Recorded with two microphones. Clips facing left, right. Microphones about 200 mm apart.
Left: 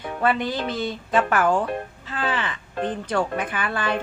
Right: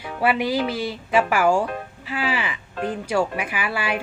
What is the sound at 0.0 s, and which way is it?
Speech, 10° right (ahead or behind).